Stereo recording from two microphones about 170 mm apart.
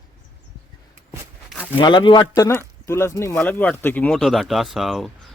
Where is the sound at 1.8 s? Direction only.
25° left (ahead or behind); by 5.1 s centre (ahead or behind).